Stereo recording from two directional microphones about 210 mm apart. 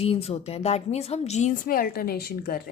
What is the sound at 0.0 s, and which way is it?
A woman's voice, 30° left (ahead or behind).